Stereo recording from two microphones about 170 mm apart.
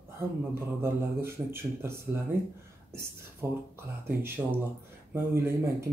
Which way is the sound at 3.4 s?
15° right (ahead or behind).